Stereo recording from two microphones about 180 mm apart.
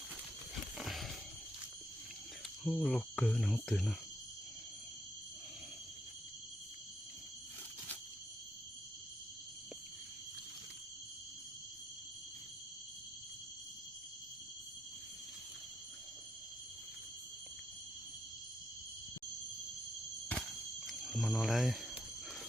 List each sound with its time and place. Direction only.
0.8 s a sound: centre (ahead or behind)
2.6 s cricket: centre (ahead or behind)
20.2 s cricket: 5° left (ahead or behind)